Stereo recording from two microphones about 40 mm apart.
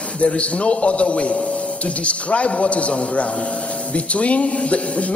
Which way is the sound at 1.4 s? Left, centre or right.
Left.